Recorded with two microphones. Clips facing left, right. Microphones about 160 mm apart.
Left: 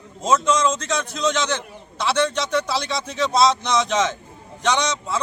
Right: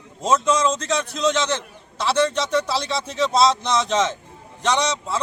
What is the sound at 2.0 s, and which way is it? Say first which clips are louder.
A man's voice: right 1 dB; centre (ahead or behind).